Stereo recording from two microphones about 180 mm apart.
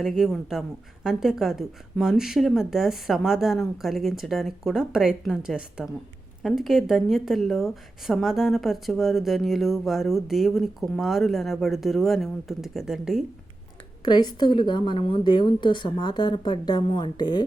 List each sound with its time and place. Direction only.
0.0 s speech: centre (ahead or behind)
14.0 s a woman's voice: 25° left (ahead or behind)